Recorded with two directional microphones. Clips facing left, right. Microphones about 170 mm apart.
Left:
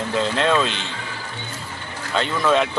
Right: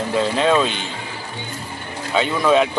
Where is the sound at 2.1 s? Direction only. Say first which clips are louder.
Right 3 dB; 5° right (ahead or behind).